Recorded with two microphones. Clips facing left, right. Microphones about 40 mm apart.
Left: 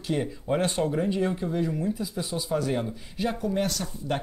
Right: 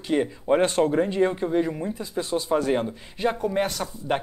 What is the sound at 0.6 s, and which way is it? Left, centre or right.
Speech, right.